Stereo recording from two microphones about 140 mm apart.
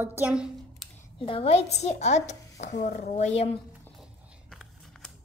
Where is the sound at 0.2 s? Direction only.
5° right (ahead or behind).